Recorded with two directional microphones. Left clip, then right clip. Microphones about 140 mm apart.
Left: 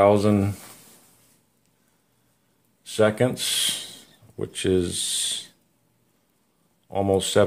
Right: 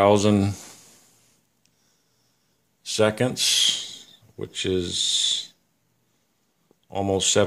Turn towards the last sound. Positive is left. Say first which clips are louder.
# left 1 dB
turn(degrees=-15)  # may be behind; listen again after turning